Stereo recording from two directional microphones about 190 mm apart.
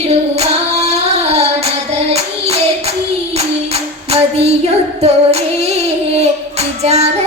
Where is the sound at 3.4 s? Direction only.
35° right (ahead or behind).